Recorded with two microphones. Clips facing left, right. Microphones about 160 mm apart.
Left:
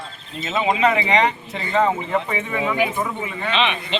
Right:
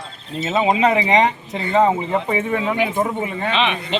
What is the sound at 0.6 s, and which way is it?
Speech, 20° right (ahead or behind).